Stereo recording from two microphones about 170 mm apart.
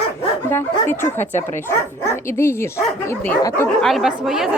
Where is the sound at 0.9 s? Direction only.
15° left (ahead or behind).